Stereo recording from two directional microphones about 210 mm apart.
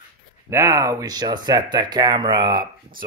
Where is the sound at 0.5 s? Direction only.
15° right (ahead or behind).